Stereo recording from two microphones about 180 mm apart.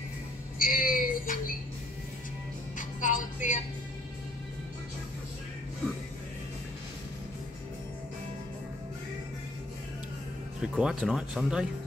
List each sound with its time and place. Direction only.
0.6 s child singing: 50° left (ahead or behind)
2.8 s music: 45° left (ahead or behind)
10.6 s speech: 5° right (ahead or behind)